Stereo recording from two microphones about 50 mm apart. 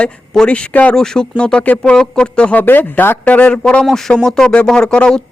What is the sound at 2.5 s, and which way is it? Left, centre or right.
Speech, left.